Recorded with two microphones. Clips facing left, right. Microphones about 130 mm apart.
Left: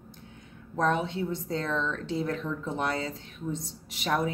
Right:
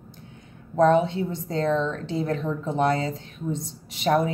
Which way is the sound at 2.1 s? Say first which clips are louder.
Right 4 dB; 40° right (ahead or behind).